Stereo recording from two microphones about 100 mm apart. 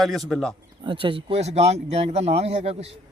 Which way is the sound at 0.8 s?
60° right (ahead or behind).